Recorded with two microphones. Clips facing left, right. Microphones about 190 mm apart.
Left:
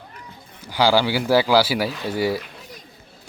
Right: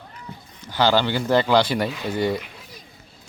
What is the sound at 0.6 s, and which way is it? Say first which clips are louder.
Speech: left 1 dB; 10° left (ahead or behind).